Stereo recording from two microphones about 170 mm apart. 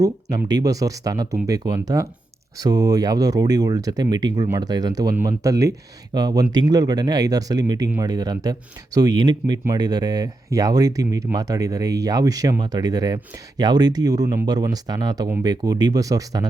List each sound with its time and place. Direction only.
0.0 s speech: 20° right (ahead or behind)